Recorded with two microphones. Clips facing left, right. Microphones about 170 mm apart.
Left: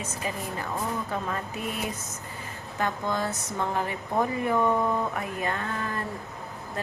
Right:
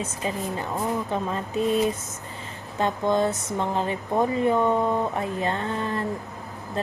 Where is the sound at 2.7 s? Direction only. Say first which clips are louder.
Right 6 dB; 25° right (ahead or behind).